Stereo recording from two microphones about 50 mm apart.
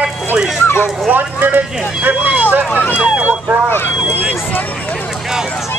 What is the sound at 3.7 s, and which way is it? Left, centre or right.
Speech, left.